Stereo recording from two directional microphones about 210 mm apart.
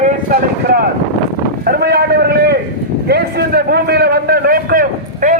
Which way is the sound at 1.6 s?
50° right (ahead or behind).